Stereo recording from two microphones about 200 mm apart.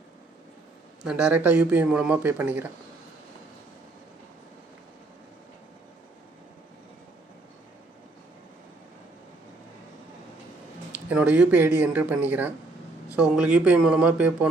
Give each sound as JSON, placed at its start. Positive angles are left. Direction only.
{"t": 1.0, "sound": "speech", "side_deg": -5}
{"t": 11.1, "sound": "speech", "side_deg": -5}